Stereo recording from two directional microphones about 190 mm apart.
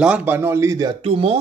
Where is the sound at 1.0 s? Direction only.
30° right (ahead or behind).